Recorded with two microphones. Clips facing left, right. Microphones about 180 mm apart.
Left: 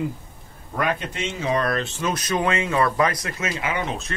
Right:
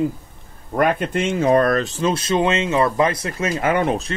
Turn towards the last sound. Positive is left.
turn(degrees=-50)  # may be behind; listen again after turning